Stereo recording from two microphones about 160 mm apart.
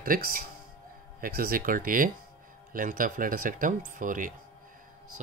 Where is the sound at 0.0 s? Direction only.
65° right (ahead or behind).